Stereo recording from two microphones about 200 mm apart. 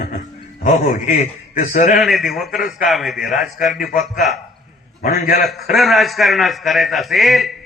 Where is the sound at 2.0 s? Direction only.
Centre (ahead or behind).